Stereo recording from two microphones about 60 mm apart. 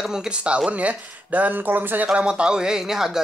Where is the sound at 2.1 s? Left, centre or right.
Centre.